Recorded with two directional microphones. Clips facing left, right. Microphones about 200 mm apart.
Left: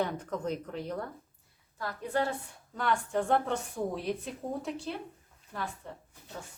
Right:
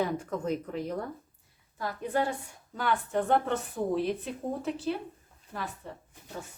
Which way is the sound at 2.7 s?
5° right (ahead or behind).